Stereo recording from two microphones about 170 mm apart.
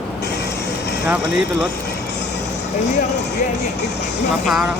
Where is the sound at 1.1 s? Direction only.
5° right (ahead or behind).